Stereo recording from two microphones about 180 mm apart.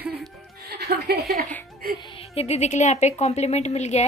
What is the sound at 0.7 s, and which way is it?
Music, 60° right (ahead or behind).